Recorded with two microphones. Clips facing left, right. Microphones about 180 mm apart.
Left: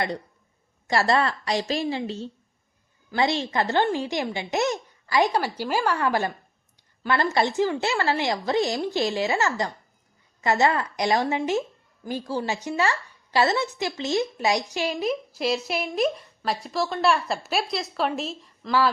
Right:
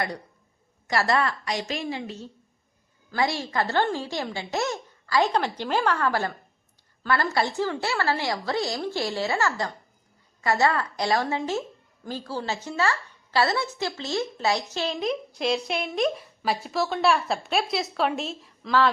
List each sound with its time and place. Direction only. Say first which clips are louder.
0.9 s a woman's voice: left 2 dB; 25° left (ahead or behind)
14.9 s a woman's voice: left 1 dB; centre (ahead or behind)